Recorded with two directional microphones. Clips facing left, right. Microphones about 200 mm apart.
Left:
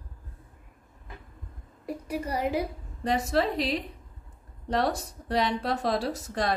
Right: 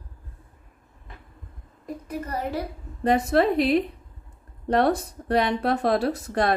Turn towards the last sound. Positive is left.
turn(degrees=-55)  # may be behind; listen again after turning